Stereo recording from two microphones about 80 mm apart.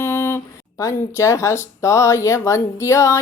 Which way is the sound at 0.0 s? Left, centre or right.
Left.